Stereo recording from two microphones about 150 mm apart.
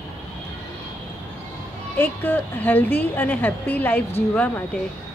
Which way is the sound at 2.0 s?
15° left (ahead or behind).